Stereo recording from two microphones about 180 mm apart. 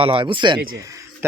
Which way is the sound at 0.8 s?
15° right (ahead or behind).